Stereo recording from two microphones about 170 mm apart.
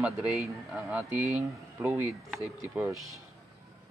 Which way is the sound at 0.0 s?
Centre (ahead or behind).